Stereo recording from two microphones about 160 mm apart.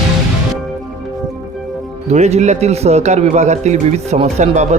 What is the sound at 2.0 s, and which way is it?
A man's voice, 45° right (ahead or behind).